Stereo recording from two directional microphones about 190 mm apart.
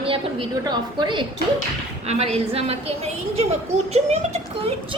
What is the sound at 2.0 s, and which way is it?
A woman's voice, 35° right (ahead or behind).